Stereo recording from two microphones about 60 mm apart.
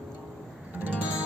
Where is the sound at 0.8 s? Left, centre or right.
Right.